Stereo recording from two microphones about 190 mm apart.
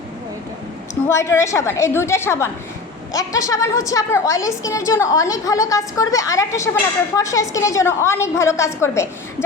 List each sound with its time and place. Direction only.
1.0 s a woman's voice: 15° left (ahead or behind)